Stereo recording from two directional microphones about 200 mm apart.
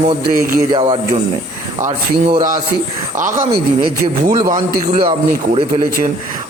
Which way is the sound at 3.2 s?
40° right (ahead or behind).